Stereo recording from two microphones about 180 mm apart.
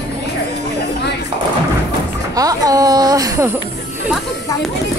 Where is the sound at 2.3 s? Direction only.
20° right (ahead or behind).